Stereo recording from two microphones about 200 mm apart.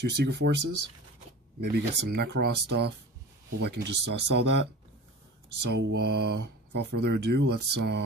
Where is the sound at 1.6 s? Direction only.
55° right (ahead or behind).